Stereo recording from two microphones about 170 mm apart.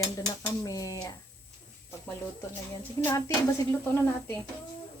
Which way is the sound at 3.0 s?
20° left (ahead or behind).